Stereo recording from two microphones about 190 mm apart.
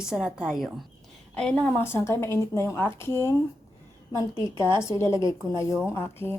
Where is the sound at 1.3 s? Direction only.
10° left (ahead or behind).